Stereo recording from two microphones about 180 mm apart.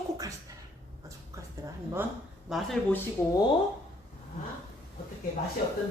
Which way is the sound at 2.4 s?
Centre (ahead or behind).